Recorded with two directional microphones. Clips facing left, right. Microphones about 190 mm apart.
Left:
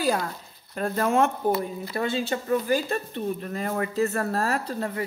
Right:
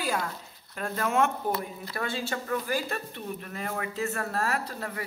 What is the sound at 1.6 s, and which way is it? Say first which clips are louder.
Speech: left 6 dB; 25° left (ahead or behind).